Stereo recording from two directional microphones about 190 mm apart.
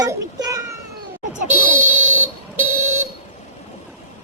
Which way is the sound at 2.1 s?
10° right (ahead or behind).